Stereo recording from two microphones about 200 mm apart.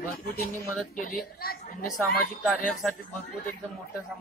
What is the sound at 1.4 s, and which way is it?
Speech, 50° left (ahead or behind).